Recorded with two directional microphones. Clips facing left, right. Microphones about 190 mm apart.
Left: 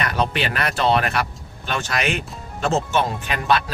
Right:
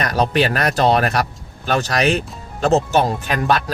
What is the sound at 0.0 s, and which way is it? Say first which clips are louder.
Speech: right 5 dB; 40° right (ahead or behind).